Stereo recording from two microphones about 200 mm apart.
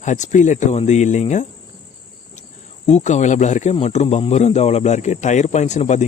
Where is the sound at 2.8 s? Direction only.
35° left (ahead or behind).